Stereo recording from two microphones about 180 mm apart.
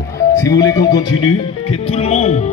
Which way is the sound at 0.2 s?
20° left (ahead or behind).